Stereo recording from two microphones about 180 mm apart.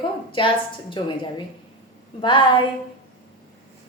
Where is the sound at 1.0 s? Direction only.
25° left (ahead or behind).